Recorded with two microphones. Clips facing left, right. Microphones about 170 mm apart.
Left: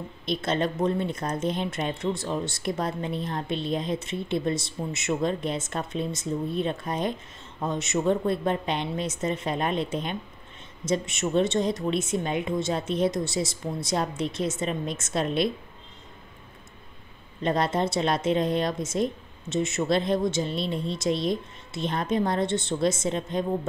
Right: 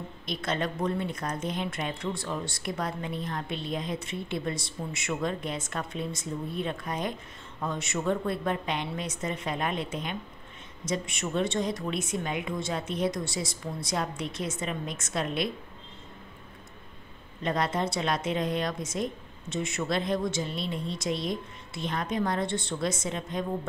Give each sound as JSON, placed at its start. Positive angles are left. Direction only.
{"t": 0.2, "sound": "speech", "side_deg": 25}
{"t": 17.4, "sound": "speech", "side_deg": 30}